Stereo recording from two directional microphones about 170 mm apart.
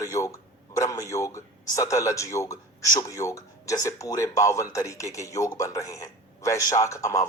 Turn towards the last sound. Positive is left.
turn(degrees=20)  # may be behind; listen again after turning